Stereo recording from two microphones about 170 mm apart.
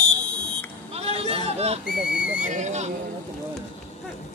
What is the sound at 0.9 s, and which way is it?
Sheep, 35° right (ahead or behind).